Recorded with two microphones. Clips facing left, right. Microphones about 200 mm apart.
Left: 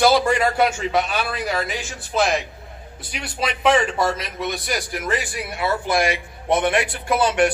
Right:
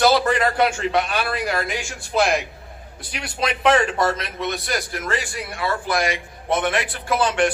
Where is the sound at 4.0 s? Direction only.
10° left (ahead or behind).